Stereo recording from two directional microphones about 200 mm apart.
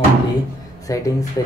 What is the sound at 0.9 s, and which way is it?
Speech, 15° left (ahead or behind).